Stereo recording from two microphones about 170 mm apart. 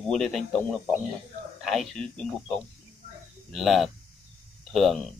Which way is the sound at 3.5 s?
Centre (ahead or behind).